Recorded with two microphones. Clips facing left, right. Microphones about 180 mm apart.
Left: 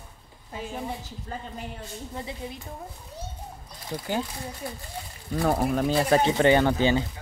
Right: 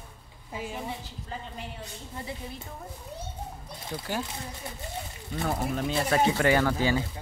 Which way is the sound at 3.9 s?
35° left (ahead or behind).